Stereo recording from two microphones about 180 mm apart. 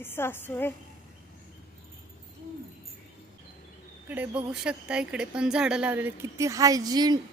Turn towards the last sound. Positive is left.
turn(degrees=-20)  # may be behind; listen again after turning